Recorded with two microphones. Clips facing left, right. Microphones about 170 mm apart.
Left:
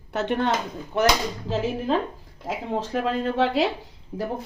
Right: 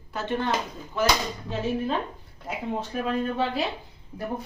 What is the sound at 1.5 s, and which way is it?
Speech, 90° left.